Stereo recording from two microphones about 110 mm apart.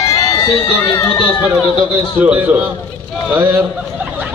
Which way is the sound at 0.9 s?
30° left (ahead or behind).